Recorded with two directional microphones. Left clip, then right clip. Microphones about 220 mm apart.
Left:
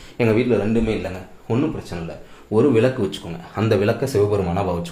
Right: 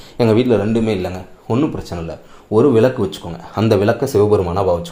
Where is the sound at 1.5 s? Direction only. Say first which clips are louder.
Right 4 dB; 25° right (ahead or behind).